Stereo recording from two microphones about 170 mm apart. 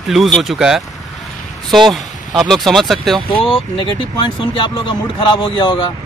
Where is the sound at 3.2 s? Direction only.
30° left (ahead or behind).